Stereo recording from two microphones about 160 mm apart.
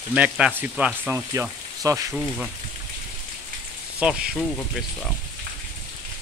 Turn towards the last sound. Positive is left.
turn(degrees=5)  # may be behind; listen again after turning